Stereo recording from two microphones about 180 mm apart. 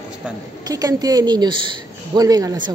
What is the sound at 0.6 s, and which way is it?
A woman's voice, 20° right (ahead or behind).